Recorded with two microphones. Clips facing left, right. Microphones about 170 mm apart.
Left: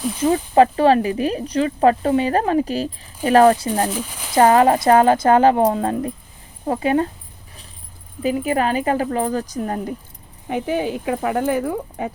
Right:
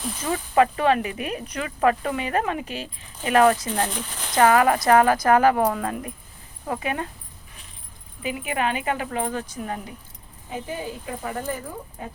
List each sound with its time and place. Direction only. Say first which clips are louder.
0.2 s speech: left 6 dB; 30° left (ahead or behind)
3.8 s speech: left 6 dB; 5° left (ahead or behind)
4.4 s a woman's voice: left 4 dB; 30° left (ahead or behind)
8.2 s speech: left 7 dB; 40° left (ahead or behind)
10.5 s speech: left 10 dB; 75° left (ahead or behind)